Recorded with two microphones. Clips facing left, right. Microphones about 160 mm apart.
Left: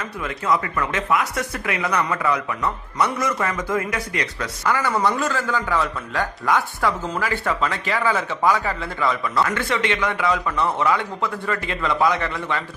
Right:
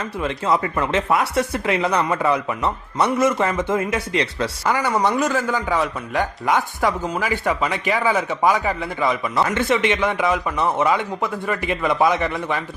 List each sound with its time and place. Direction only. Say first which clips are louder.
0.2 s speech: right 2 dB; 25° right (ahead or behind)